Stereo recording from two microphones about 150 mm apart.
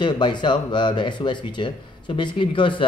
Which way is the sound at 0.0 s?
30° left (ahead or behind).